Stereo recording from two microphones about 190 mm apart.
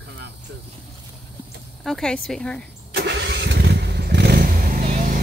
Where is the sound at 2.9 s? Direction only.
60° right (ahead or behind).